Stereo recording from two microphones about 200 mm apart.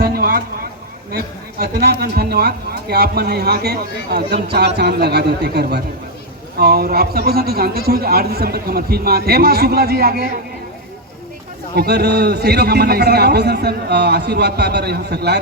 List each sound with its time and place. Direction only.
0.0 s a sound: 45° right (ahead or behind)
1.1 s speech: 50° right (ahead or behind)
11.7 s a man's voice: 55° right (ahead or behind)